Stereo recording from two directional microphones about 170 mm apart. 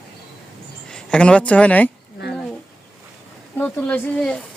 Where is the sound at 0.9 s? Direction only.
5° left (ahead or behind).